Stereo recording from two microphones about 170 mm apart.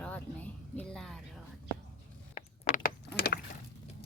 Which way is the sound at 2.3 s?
45° left (ahead or behind).